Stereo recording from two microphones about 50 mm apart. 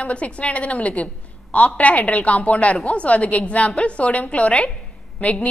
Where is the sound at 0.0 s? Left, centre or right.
Left.